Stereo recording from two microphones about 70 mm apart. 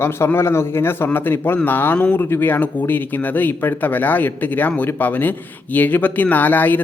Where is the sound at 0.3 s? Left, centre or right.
Left.